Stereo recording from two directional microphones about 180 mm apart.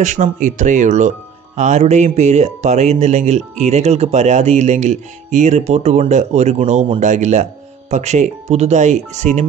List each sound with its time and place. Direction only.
0.0 s speech: 45° right (ahead or behind)